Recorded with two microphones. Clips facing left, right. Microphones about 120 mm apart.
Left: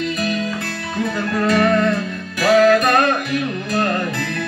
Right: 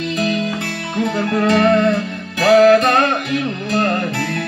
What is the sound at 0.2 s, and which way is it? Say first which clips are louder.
Music: right 3 dB; 25° right (ahead or behind).